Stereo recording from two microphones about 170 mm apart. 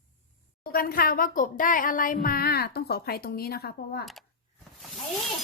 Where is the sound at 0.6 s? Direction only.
60° left (ahead or behind).